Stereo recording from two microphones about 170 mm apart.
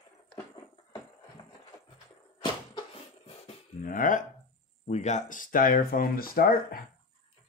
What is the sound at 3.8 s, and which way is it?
Speech, 50° left (ahead or behind).